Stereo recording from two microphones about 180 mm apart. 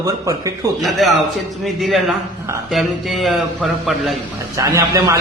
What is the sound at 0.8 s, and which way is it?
A man's voice, centre (ahead or behind).